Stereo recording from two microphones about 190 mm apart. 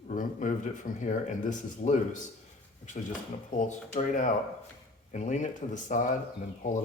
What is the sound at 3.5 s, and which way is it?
Speech, 40° left (ahead or behind).